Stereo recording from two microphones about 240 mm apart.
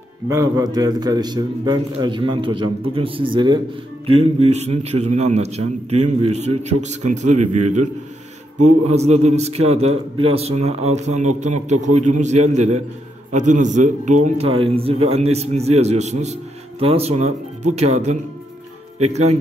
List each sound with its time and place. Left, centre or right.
0.3 s a man's voice: centre